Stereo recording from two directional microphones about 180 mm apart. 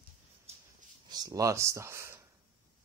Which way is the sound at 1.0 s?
20° right (ahead or behind).